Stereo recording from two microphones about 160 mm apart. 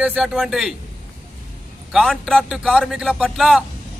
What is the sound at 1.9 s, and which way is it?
A man's voice, centre (ahead or behind).